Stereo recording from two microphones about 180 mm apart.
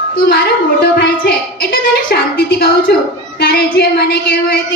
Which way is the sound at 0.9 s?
55° left (ahead or behind).